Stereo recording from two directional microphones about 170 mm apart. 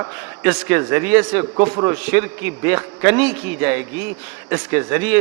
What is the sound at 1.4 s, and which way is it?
Speech, 30° right (ahead or behind).